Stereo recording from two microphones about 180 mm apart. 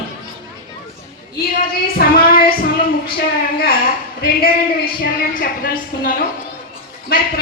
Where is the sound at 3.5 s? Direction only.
60° left (ahead or behind).